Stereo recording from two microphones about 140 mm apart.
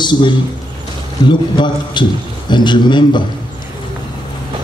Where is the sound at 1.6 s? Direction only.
35° left (ahead or behind).